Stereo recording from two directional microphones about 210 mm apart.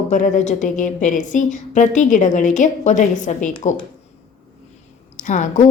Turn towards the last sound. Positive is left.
turn(degrees=35)  # may be behind; listen again after turning